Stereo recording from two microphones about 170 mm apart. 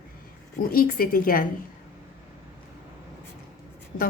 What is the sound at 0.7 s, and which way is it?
Speech, 60° left (ahead or behind).